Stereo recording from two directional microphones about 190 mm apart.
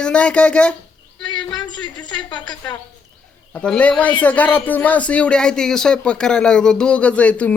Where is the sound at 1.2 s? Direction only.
25° left (ahead or behind).